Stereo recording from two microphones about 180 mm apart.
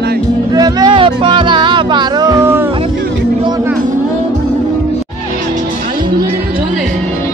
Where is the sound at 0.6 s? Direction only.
25° right (ahead or behind).